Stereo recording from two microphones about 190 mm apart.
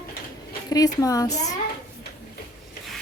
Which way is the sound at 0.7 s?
20° left (ahead or behind).